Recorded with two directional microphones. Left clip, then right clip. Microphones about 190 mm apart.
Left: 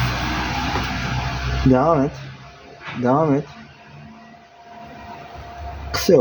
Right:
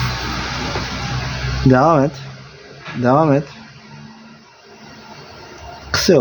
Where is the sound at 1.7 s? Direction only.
40° right (ahead or behind).